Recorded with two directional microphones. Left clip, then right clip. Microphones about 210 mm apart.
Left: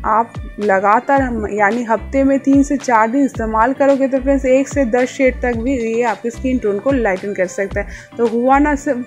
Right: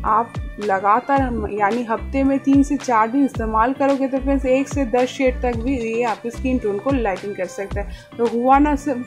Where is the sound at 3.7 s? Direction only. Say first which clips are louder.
Left 6 dB; centre (ahead or behind).